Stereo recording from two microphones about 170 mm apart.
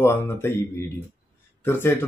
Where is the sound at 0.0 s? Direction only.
15° left (ahead or behind).